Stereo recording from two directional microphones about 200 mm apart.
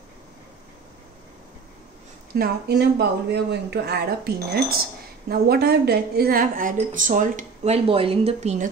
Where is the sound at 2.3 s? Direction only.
50° right (ahead or behind).